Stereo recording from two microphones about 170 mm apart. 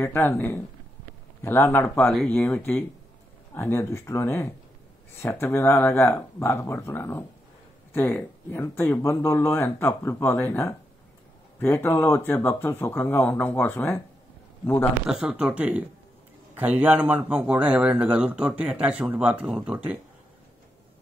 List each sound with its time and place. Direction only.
0.0 s speech: 15° left (ahead or behind)
15.0 s a man's voice: 5° right (ahead or behind)